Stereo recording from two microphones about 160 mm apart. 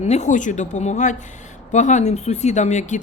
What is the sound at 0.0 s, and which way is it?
Speech, 45° left (ahead or behind).